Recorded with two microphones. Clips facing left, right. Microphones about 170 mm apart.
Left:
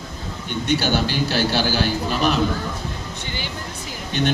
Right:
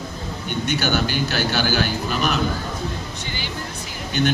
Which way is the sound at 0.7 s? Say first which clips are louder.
Left 2 dB; 30° left (ahead or behind).